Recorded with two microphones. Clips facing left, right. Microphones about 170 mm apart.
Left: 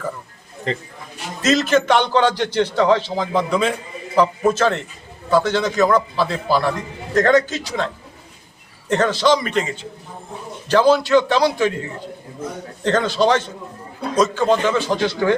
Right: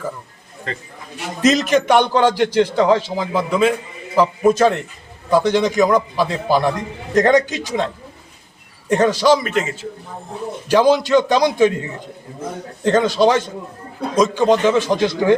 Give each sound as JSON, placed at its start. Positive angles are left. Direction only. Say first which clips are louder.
{"t": 0.7, "sound": "a man's voice", "louder": "left 5 dB", "side_deg": 25}
{"t": 1.4, "sound": "a man's voice", "louder": "right 2 dB", "side_deg": -15}
{"t": 8.9, "sound": "a man's voice", "louder": "right 2 dB", "side_deg": -10}
{"t": 12.8, "sound": "a man's voice", "louder": "right 3 dB", "side_deg": -10}